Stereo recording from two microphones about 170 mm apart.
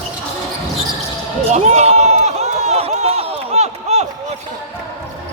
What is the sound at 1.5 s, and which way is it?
Run, 40° right (ahead or behind).